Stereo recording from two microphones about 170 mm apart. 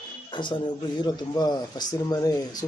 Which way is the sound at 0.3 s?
25° left (ahead or behind).